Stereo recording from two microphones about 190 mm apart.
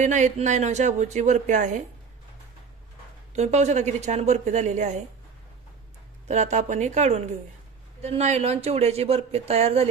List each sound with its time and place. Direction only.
0.0 s speech: 40° right (ahead or behind)
3.3 s speech: 35° right (ahead or behind)
6.2 s speech: 35° right (ahead or behind)